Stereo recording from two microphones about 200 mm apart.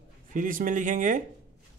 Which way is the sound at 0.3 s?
40° right (ahead or behind).